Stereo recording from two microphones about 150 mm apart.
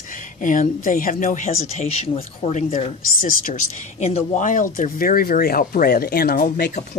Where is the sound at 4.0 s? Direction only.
45° left (ahead or behind); by 6.7 s 85° left.